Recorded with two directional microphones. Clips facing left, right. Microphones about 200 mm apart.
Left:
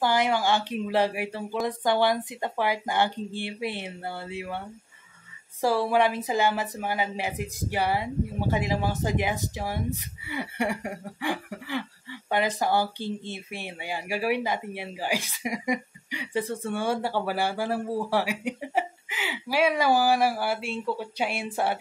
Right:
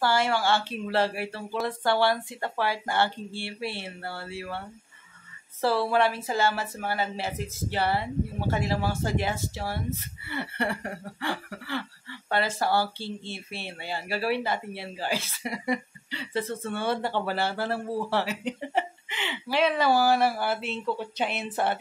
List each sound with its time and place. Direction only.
0.0 s speech: 15° left (ahead or behind)
5.6 s speech: 15° left (ahead or behind)